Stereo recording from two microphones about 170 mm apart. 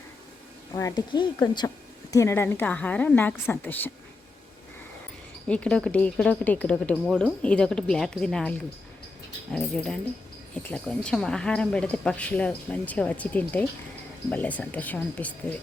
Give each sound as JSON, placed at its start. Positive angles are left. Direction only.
{"t": 0.7, "sound": "speech", "side_deg": 20}
{"t": 5.5, "sound": "speech", "side_deg": 5}